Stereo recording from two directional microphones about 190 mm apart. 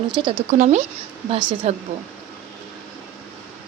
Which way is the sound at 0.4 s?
40° right (ahead or behind).